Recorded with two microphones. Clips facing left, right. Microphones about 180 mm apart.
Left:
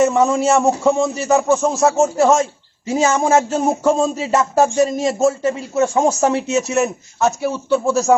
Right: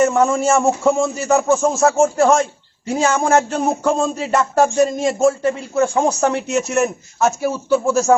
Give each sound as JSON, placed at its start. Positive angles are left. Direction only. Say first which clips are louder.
{"t": 0.0, "sound": "speech", "louder": "left 1 dB", "side_deg": 0}